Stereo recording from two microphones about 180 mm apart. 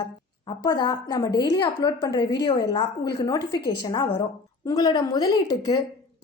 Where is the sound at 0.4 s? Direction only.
20° left (ahead or behind).